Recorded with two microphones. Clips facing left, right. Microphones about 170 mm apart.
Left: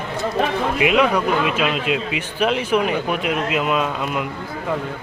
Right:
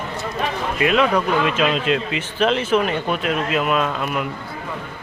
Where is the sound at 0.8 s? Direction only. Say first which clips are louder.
Even; 15° left (ahead or behind).